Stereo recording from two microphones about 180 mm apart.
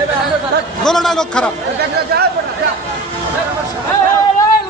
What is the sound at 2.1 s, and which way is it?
Speech, 60° right (ahead or behind).